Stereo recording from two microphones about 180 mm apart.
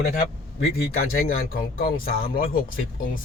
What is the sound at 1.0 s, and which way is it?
Speech, 55° left (ahead or behind).